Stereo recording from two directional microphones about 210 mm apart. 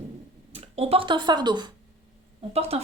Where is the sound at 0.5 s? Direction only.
30° right (ahead or behind).